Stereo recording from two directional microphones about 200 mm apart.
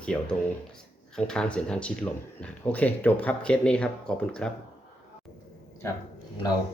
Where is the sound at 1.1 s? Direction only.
5° left (ahead or behind).